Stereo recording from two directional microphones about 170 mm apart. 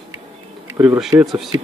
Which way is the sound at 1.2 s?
Centre (ahead or behind).